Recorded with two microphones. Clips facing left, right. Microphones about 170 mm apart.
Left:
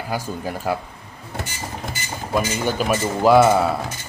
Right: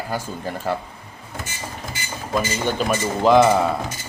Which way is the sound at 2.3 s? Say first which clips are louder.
Left 1 dB; 10° left (ahead or behind).